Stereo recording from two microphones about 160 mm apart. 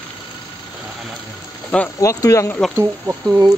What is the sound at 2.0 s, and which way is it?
Speech, 20° left (ahead or behind).